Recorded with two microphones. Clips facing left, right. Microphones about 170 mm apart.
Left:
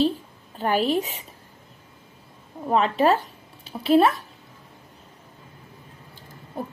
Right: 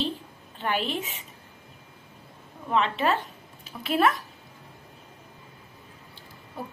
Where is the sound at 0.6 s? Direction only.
40° left (ahead or behind).